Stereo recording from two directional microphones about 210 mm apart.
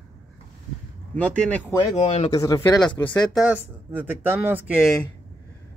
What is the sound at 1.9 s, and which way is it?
Speech, 30° left (ahead or behind).